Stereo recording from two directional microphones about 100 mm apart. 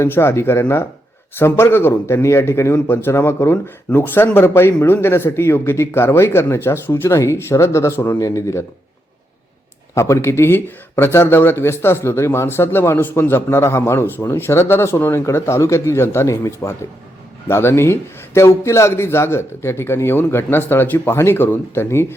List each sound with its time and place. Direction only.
0.0 s speech: 25° left (ahead or behind)
8.2 s speech: 30° left (ahead or behind)
9.9 s speech: 30° left (ahead or behind)